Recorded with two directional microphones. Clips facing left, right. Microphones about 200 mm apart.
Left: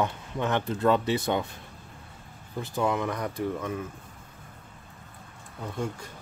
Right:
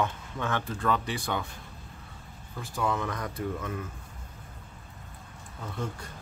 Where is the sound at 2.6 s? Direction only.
20° left (ahead or behind).